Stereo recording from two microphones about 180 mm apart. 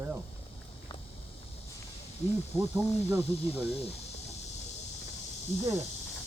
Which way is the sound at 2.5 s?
15° right (ahead or behind).